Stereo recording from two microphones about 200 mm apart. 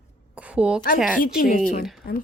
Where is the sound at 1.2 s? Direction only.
45° left (ahead or behind).